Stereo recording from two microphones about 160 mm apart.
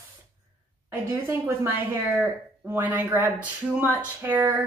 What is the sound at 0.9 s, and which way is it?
Speech, 15° right (ahead or behind).